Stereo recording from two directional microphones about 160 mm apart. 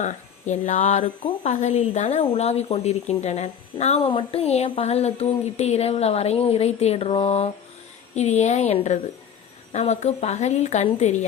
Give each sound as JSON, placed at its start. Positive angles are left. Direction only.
{"t": 0.0, "sound": "a woman's voice", "side_deg": 50}